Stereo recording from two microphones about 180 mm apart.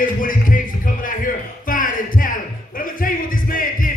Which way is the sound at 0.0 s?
50° left (ahead or behind).